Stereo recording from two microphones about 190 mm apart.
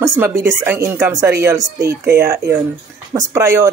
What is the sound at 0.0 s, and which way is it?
Speech, 10° right (ahead or behind).